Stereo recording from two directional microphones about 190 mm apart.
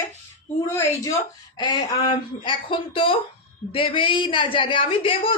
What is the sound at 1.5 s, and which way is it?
A woman's voice, 25° left (ahead or behind).